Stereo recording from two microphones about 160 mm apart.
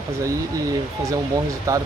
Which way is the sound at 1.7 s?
20° right (ahead or behind).